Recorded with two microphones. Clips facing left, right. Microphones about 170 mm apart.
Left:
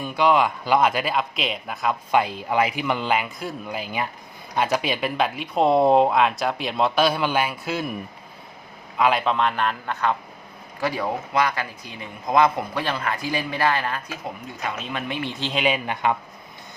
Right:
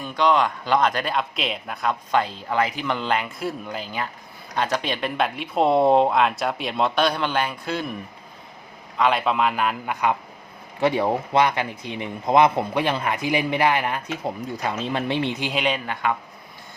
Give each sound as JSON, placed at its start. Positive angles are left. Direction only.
{"t": 0.0, "sound": "speech", "side_deg": 10}
{"t": 3.8, "sound": "speech", "side_deg": 10}
{"t": 9.0, "sound": "speech", "side_deg": 0}
{"t": 10.8, "sound": "speech", "side_deg": -25}
{"t": 14.5, "sound": "speech", "side_deg": -35}
{"t": 15.5, "sound": "speech", "side_deg": 5}